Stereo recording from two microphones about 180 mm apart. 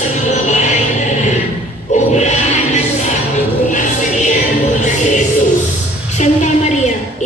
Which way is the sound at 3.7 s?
45° left (ahead or behind).